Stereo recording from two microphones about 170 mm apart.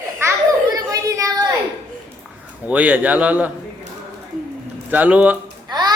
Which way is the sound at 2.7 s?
10° right (ahead or behind).